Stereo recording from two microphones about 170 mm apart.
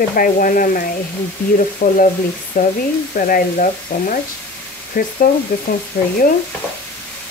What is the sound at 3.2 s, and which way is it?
Speech, 55° left (ahead or behind).